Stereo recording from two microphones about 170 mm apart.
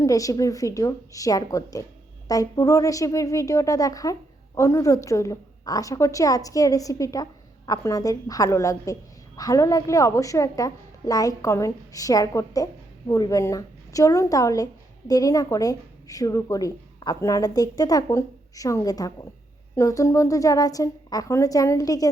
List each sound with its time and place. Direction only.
0.0 s a woman's voice: 20° left (ahead or behind)